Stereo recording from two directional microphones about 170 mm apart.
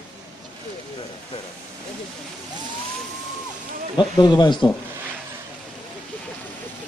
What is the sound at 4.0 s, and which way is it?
Speech, 25° left (ahead or behind).